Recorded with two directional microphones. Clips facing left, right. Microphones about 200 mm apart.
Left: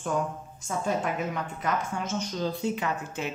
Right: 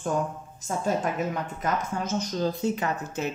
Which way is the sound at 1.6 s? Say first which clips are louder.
Right 1 dB; 40° right (ahead or behind).